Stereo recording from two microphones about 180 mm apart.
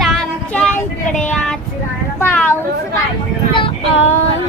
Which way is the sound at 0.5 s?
10° left (ahead or behind).